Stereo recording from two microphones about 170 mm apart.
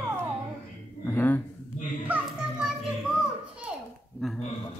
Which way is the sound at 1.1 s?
10° left (ahead or behind).